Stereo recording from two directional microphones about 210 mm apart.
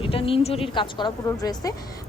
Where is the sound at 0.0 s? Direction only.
25° left (ahead or behind).